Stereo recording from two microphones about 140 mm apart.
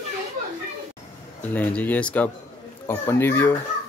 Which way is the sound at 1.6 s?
10° left (ahead or behind).